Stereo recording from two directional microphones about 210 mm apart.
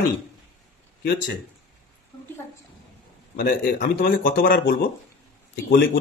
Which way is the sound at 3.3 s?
45° left (ahead or behind).